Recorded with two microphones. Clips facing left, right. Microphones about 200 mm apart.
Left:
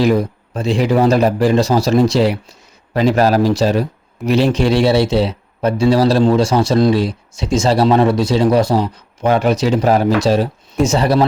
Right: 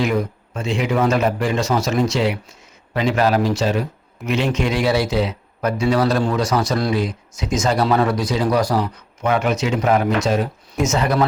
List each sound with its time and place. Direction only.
0.0 s speech: 35° left (ahead or behind)